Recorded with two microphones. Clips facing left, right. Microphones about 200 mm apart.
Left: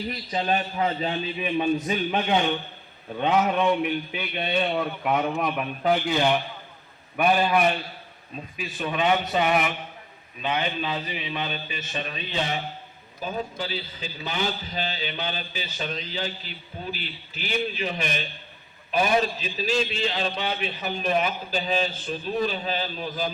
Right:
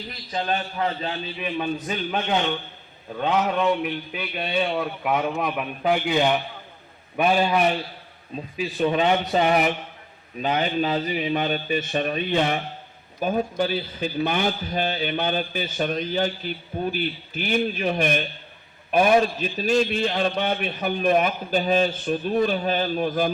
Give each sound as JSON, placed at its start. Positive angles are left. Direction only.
{"t": 0.3, "sound": "a man's voice", "side_deg": 15}
{"t": 8.5, "sound": "a man's voice", "side_deg": -30}